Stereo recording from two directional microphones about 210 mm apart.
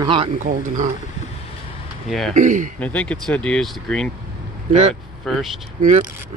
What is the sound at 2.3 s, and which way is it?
Speech, 35° right (ahead or behind).